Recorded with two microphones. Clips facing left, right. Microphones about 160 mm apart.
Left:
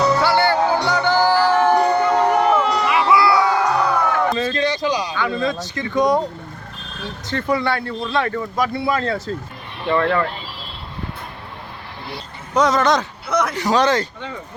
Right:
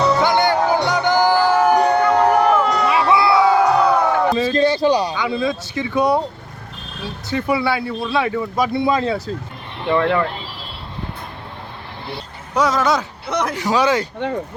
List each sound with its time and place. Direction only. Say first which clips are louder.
0.2 s music: right 1 dB; 15° right (ahead or behind)
2.0 s a sound: right 2 dB; 10° left (ahead or behind)
2.9 s a sound: left 1 dB; 25° right (ahead or behind)
3.3 s crowd: right 4 dB; 5° right (ahead or behind)
4.5 s a sound: right 5 dB; 35° right (ahead or behind)
5.1 s a man's voice: right 1 dB; 10° right (ahead or behind)
7.3 s a man's voice: right 1 dB; 10° right (ahead or behind)
12.5 s a man's voice: left 1 dB; 5° right (ahead or behind)
14.2 s speech: right 9 dB; 55° right (ahead or behind)